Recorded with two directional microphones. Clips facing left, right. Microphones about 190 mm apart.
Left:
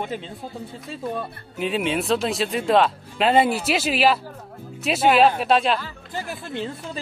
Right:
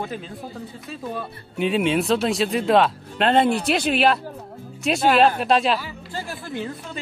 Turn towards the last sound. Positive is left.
turn(degrees=25)  # may be behind; listen again after turning